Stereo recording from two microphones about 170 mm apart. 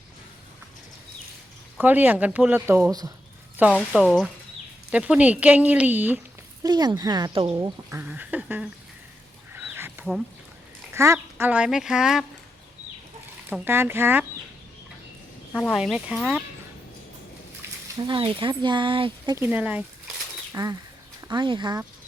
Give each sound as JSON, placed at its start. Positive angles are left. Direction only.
{"t": 1.8, "sound": "speech", "side_deg": -10}
{"t": 3.6, "sound": "speech", "side_deg": -5}
{"t": 6.6, "sound": "speech", "side_deg": -25}
{"t": 9.6, "sound": "a sound", "side_deg": -10}
{"t": 10.9, "sound": "speech", "side_deg": -15}
{"t": 13.5, "sound": "speech", "side_deg": -15}
{"t": 15.5, "sound": "speech", "side_deg": 0}
{"t": 18.0, "sound": "speech", "side_deg": -30}
{"t": 19.4, "sound": "speech", "side_deg": -10}
{"t": 20.5, "sound": "speech", "side_deg": -20}